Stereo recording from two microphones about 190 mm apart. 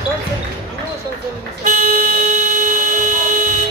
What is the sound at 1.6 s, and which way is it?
Vehicle, 40° right (ahead or behind).